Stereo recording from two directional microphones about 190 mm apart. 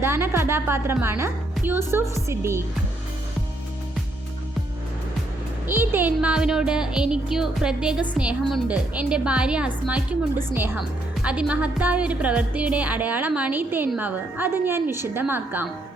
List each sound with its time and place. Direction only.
0.0 s a woman's voice: 15° right (ahead or behind)
5.6 s a woman's voice: 10° right (ahead or behind)